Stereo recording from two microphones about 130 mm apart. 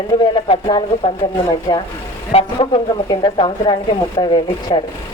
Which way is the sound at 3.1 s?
35° left (ahead or behind).